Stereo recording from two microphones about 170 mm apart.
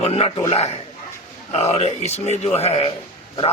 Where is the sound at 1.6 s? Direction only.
35° left (ahead or behind).